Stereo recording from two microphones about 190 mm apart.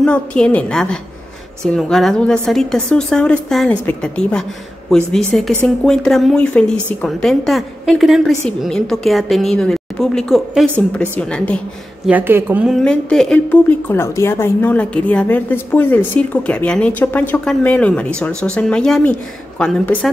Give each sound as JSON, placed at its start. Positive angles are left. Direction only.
{"t": 0.0, "sound": "a woman's voice", "side_deg": 5}
{"t": 12.1, "sound": "a woman's voice", "side_deg": -10}
{"t": 12.7, "sound": "a woman's voice", "side_deg": 5}